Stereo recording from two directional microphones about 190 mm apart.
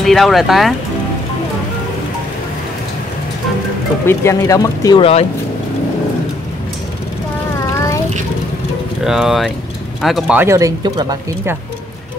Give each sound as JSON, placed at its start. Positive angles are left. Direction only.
{"t": 0.0, "sound": "speech", "side_deg": 0}
{"t": 4.0, "sound": "speech", "side_deg": 15}
{"t": 7.7, "sound": "child singing", "side_deg": 15}
{"t": 9.0, "sound": "speech", "side_deg": -5}